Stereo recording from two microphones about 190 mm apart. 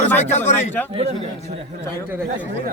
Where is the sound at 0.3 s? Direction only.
35° left (ahead or behind).